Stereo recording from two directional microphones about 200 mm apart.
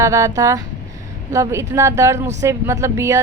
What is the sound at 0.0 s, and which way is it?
A woman's voice, 15° right (ahead or behind).